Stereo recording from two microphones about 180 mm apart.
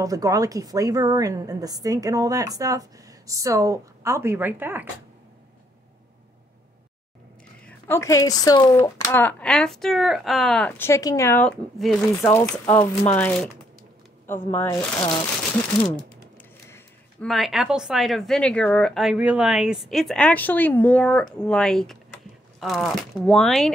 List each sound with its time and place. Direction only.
0.0 s a woman's voice: 20° right (ahead or behind)
7.6 s speech: 15° left (ahead or behind)
12.3 s speech: 15° left (ahead or behind)
16.6 s a sound: 15° left (ahead or behind)
17.3 s speech: centre (ahead or behind)